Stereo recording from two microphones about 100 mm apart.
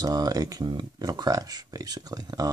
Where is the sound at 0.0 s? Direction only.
40° right (ahead or behind).